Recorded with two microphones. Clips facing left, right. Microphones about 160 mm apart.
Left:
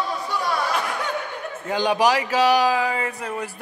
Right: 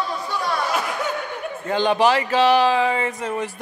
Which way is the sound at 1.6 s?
10° left (ahead or behind).